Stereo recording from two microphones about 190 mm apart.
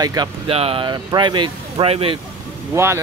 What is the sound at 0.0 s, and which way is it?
Speech, 20° right (ahead or behind).